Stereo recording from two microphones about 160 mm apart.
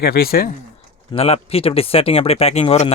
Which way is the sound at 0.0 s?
80° left.